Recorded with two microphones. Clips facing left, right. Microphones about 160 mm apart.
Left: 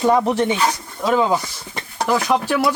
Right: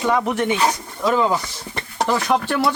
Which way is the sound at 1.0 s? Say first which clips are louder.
Left 1 dB; 15° left (ahead or behind).